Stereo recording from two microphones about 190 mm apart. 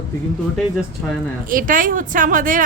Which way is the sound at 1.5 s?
45° right (ahead or behind).